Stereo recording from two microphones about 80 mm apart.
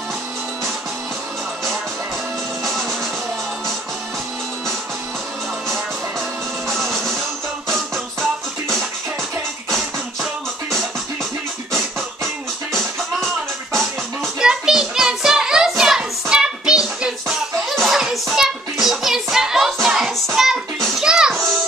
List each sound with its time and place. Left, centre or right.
2.6 s music: centre
6.7 s music: centre
14.4 s child singing: centre
17.7 s hands: centre
20.3 s music: centre